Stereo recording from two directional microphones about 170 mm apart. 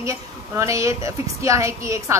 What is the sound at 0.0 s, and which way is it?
A woman's voice, 15° right (ahead or behind).